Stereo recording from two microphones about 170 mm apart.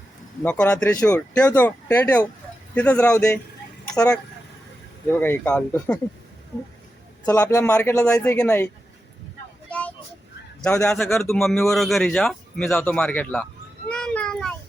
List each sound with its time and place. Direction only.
0.4 s speech: 5° left (ahead or behind)
7.3 s a man's voice: 20° left (ahead or behind)
9.6 s vehicle: 10° left (ahead or behind)
10.6 s speech: 5° left (ahead or behind)
13.9 s a sound: 5° left (ahead or behind)